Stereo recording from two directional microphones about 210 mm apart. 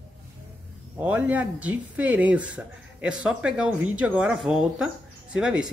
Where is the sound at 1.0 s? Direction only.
10° right (ahead or behind).